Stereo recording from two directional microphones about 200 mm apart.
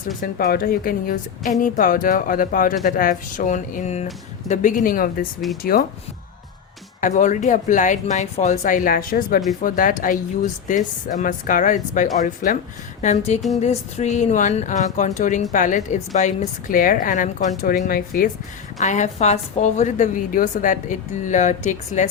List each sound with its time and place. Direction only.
0.2 s speech: 50° left (ahead or behind)
7.0 s a woman's voice: 35° left (ahead or behind)
18.8 s a woman's voice: 35° left (ahead or behind)